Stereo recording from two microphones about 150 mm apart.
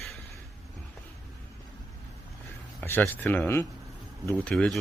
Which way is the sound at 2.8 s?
15° left (ahead or behind).